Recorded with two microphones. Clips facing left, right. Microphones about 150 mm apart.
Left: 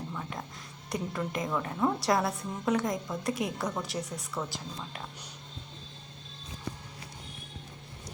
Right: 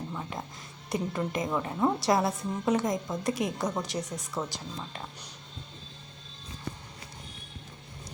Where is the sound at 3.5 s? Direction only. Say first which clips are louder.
Right 2 dB; 20° right (ahead or behind).